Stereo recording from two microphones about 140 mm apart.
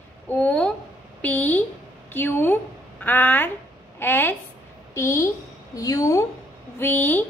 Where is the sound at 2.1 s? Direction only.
15° left (ahead or behind).